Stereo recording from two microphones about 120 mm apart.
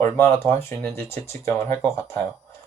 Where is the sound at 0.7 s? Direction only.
20° left (ahead or behind).